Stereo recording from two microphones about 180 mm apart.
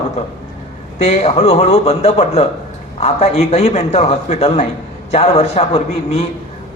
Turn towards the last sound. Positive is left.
turn(degrees=35)  # may be behind; listen again after turning